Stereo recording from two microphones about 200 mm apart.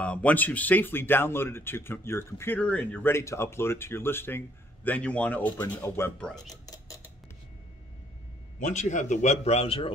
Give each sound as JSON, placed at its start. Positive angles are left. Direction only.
{"t": 0.0, "sound": "speech", "side_deg": 5}
{"t": 6.6, "sound": "a sound", "side_deg": 20}
{"t": 8.5, "sound": "a man's voice", "side_deg": 35}